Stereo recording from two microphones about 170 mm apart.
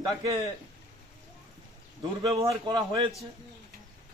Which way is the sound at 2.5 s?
25° right (ahead or behind).